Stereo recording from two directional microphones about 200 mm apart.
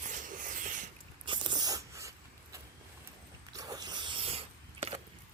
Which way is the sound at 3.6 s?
20° right (ahead or behind).